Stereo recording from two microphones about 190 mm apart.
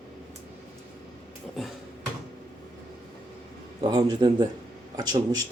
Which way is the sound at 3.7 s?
20° right (ahead or behind).